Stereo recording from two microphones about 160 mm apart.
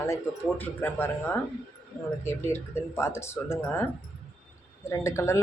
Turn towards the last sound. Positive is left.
turn(degrees=15)  # may be behind; listen again after turning